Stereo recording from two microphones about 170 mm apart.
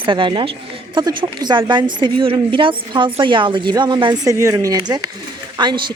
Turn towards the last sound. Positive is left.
turn(degrees=-25)  # may be behind; listen again after turning